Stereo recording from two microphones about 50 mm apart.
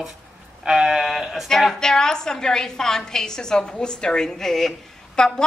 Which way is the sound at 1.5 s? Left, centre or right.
Centre.